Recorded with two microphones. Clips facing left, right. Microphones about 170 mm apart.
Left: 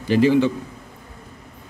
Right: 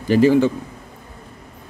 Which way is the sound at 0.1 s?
45° right (ahead or behind).